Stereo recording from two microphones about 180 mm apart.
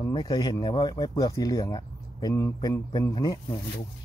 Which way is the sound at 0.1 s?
25° left (ahead or behind).